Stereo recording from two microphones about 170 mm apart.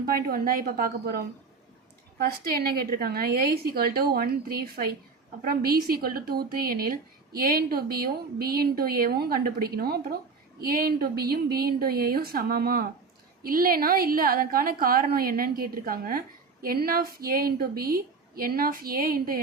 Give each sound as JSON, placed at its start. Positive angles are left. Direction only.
{"t": 0.0, "sound": "a woman's voice", "side_deg": -60}